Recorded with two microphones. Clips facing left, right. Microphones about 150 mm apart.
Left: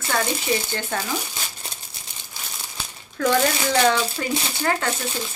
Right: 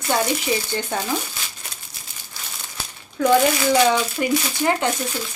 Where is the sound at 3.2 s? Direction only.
10° right (ahead or behind).